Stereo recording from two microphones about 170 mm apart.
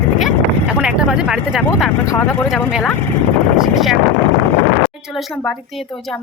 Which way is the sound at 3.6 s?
Centre (ahead or behind).